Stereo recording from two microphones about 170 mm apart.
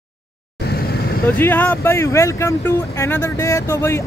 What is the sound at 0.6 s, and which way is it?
Vehicle, 70° left (ahead or behind).